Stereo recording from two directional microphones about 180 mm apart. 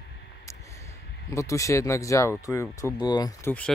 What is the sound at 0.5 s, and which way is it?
Speech, 15° left (ahead or behind).